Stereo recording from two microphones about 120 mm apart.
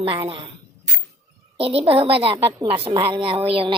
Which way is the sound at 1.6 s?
55° right (ahead or behind).